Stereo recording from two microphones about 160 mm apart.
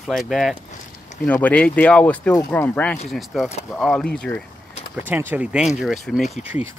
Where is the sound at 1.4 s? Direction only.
10° left (ahead or behind).